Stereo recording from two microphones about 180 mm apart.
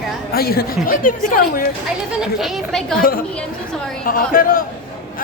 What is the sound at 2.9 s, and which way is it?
A woman's voice, 55° left (ahead or behind).